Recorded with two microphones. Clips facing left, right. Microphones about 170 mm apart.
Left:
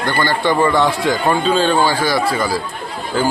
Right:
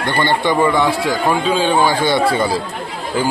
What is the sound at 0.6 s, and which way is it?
A man's voice, 10° right (ahead or behind).